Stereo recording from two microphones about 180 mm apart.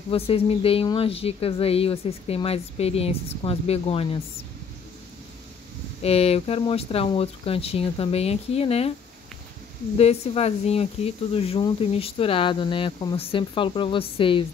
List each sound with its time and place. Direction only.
0.1 s speech: 30° left (ahead or behind)
6.0 s speech: 35° left (ahead or behind)
9.9 s speech: 35° left (ahead or behind)